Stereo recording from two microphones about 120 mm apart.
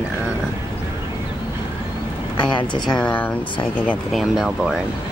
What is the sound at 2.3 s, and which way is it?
Speech, 40° left (ahead or behind).